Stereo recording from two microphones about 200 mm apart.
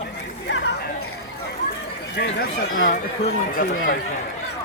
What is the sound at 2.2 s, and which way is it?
Speech, 55° left (ahead or behind).